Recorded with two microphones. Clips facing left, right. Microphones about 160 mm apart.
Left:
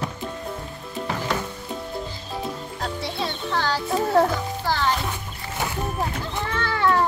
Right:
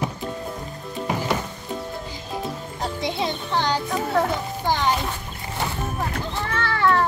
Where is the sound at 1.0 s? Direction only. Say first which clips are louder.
Right 2 dB; 15° right (ahead or behind).